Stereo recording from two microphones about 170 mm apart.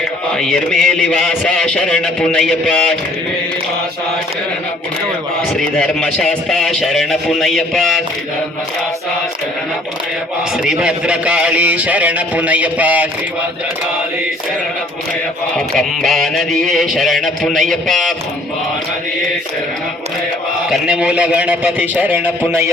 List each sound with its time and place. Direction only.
0.3 s a man's voice: 5° left (ahead or behind)
5.5 s a man's voice: 5° left (ahead or behind)
10.6 s speech: 5° right (ahead or behind)
15.5 s a man's voice: centre (ahead or behind)
20.7 s speech: 5° right (ahead or behind)